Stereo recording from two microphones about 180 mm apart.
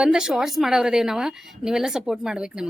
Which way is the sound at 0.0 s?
5° right (ahead or behind).